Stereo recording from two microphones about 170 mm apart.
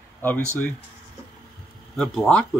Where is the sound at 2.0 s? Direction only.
Centre (ahead or behind).